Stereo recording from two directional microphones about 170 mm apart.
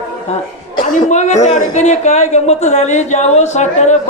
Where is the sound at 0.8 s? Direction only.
50° left (ahead or behind).